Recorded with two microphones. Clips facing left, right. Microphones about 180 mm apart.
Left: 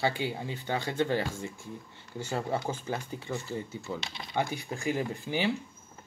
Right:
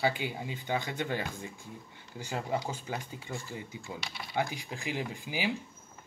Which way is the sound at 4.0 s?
20° left (ahead or behind).